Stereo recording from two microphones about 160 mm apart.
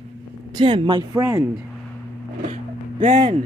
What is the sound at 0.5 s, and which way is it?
Speech, 30° right (ahead or behind).